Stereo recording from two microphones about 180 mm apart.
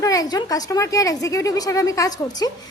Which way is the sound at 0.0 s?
20° left (ahead or behind).